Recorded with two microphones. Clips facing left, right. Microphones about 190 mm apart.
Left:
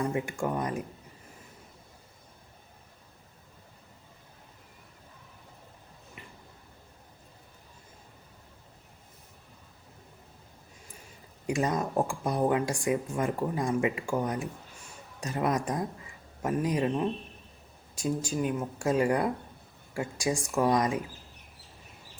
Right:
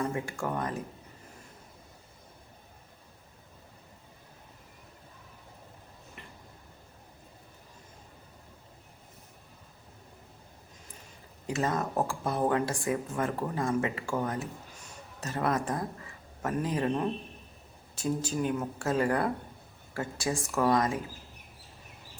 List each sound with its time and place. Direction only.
0.1 s speech: 15° left (ahead or behind)
11.4 s speech: 15° left (ahead or behind)
17.9 s speech: 10° left (ahead or behind)